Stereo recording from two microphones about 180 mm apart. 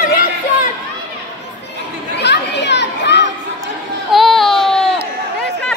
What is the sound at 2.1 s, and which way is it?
Children playing, 70° left (ahead or behind).